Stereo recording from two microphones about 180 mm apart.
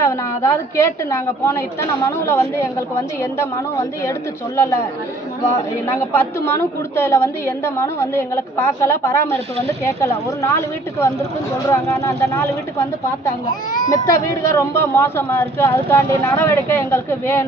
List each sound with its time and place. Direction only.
0.0 s speech: 15° left (ahead or behind)
6.1 s speech: 15° left (ahead or behind)
11.7 s speech: 15° left (ahead or behind)
13.9 s speech: 15° left (ahead or behind)